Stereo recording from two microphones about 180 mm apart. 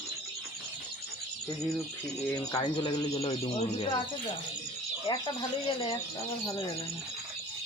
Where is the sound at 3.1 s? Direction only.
35° left (ahead or behind).